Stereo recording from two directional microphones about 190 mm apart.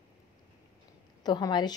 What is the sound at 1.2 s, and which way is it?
Speech, 20° left (ahead or behind).